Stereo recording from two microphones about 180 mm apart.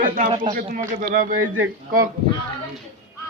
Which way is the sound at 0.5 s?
50° right (ahead or behind).